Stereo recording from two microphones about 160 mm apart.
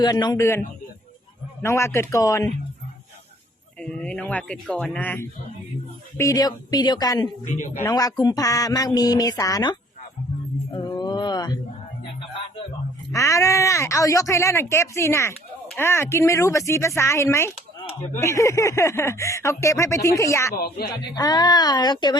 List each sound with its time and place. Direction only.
0.0 s speech: 25° left (ahead or behind)
1.6 s speech: 15° left (ahead or behind)
3.8 s speech: 5° left (ahead or behind); by 7.3 s 25° left (ahead or behind)
7.4 s speech: 55° left (ahead or behind)
7.8 s speech: 20° left (ahead or behind)
10.7 s mantra: 25° left (ahead or behind)
13.1 s speech: 20° left (ahead or behind)
20.6 s speech: 75° left (ahead or behind)
21.2 s speech: 25° left (ahead or behind)